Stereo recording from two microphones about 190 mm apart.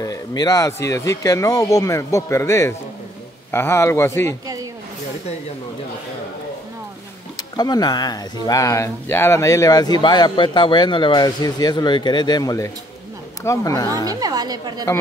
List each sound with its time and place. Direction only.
0.0 s speech: 20° left (ahead or behind)
7.3 s speech: 20° left (ahead or behind)
14.0 s a woman's voice: 20° right (ahead or behind)